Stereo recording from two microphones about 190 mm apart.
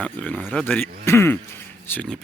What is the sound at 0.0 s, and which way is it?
Speech, 5° left (ahead or behind).